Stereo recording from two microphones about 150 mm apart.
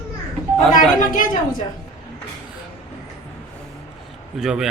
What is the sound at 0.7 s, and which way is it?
Speech, 60° left (ahead or behind).